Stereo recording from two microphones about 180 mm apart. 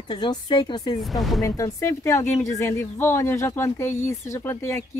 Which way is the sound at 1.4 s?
15° left (ahead or behind).